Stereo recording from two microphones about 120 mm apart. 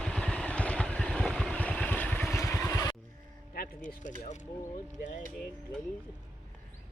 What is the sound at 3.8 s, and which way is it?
Keys jangling, 90° left.